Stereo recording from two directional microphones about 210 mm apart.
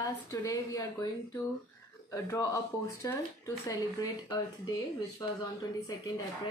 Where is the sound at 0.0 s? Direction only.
15° left (ahead or behind).